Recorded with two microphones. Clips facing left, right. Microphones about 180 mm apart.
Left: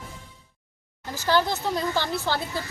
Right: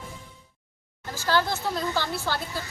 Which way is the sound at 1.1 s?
15° left (ahead or behind).